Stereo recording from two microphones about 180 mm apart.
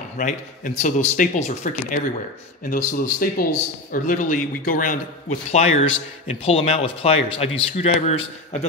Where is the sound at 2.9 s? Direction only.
55° left (ahead or behind).